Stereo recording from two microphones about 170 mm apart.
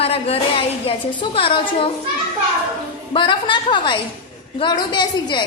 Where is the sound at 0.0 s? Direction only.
35° left (ahead or behind).